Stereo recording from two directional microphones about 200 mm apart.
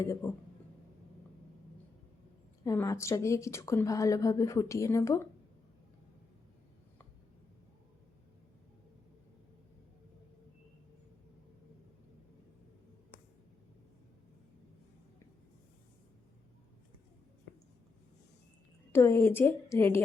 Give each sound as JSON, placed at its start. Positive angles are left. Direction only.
{"t": 0.0, "sound": "a woman's voice", "side_deg": 15}
{"t": 2.6, "sound": "a woman's voice", "side_deg": 15}
{"t": 18.9, "sound": "a woman's voice", "side_deg": 15}